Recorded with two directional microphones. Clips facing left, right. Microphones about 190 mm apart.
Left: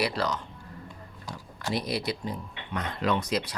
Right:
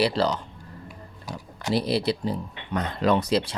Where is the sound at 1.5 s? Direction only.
30° right (ahead or behind).